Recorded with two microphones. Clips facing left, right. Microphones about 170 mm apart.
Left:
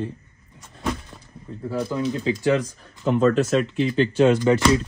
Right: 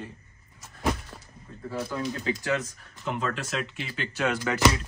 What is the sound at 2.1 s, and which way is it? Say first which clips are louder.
Speech: left 8 dB; 25° left (ahead or behind).